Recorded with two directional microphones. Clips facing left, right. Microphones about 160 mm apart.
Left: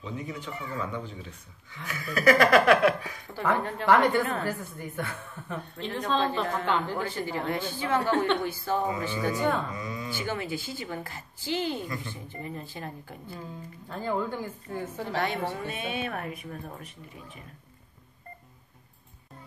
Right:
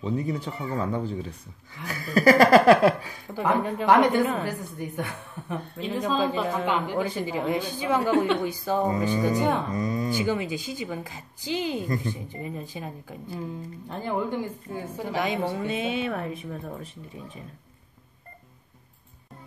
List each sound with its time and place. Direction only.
0.0 s speech: 35° right (ahead or behind)
3.3 s speech: 15° right (ahead or behind)
9.7 s speech: 40° right (ahead or behind)
10.1 s speech: 15° right (ahead or behind)
15.8 s speech: 25° right (ahead or behind)